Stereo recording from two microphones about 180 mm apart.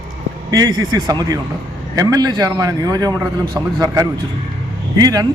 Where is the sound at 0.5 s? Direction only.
20° right (ahead or behind).